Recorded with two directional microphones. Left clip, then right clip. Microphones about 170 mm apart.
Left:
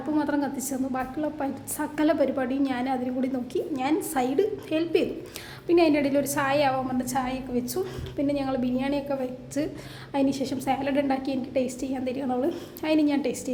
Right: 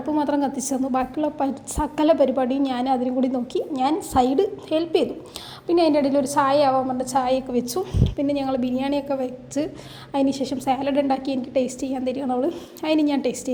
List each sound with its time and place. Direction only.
0.2 s a woman's voice: 25° right (ahead or behind)